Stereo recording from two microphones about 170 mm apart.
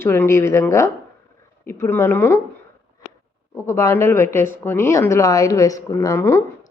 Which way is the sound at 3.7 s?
15° left (ahead or behind).